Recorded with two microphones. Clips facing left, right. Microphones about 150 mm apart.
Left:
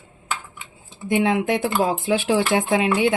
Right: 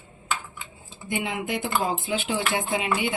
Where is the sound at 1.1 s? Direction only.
90° left.